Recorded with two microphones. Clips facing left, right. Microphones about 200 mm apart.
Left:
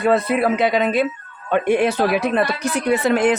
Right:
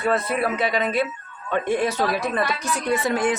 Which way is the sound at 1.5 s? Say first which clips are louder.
Left 5 dB; 70° left (ahead or behind).